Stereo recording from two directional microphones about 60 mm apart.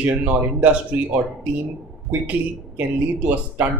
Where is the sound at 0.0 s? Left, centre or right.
Right.